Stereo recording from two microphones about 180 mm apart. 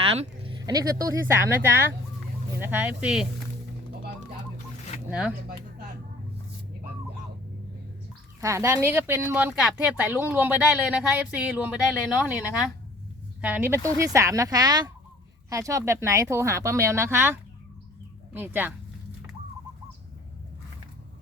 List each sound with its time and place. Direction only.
0.0 s a sound: 30° right (ahead or behind)
0.6 s speech: 20° right (ahead or behind)
2.6 s speech: 10° right (ahead or behind)
8.4 s speech: 15° right (ahead or behind)
18.3 s speech: 10° right (ahead or behind)